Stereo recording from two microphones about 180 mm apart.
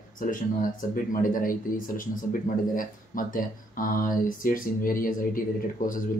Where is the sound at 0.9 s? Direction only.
50° left (ahead or behind).